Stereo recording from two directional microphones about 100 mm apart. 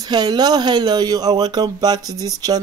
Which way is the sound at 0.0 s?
45° right (ahead or behind).